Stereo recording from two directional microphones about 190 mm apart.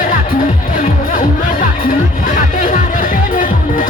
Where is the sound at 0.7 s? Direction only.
45° left (ahead or behind).